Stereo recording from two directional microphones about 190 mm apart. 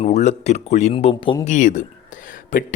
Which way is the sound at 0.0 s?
35° left (ahead or behind).